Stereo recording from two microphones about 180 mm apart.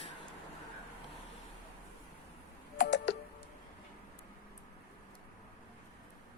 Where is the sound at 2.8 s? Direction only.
70° left (ahead or behind).